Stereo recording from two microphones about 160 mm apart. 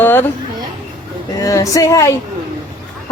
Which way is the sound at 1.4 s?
20° left (ahead or behind).